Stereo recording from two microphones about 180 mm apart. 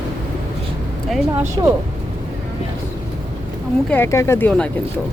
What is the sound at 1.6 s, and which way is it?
Speech, 25° right (ahead or behind).